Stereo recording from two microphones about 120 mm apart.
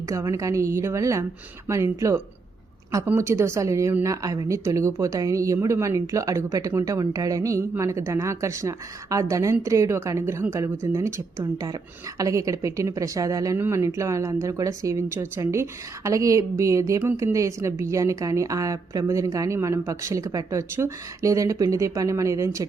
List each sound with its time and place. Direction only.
0.1 s a woman's voice: 25° right (ahead or behind)
17.3 s a woman's voice: 25° right (ahead or behind)